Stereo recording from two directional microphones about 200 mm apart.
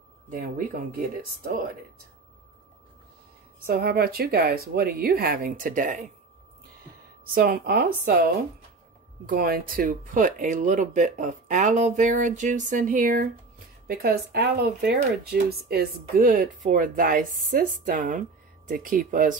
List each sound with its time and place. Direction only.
0.3 s speech: 45° right (ahead or behind)
3.6 s speech: 50° right (ahead or behind)
7.3 s speech: 50° right (ahead or behind)